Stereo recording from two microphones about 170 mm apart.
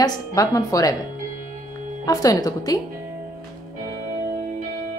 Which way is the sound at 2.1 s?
20° left (ahead or behind).